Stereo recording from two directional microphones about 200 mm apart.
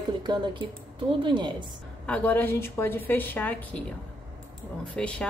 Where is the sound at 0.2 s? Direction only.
25° right (ahead or behind).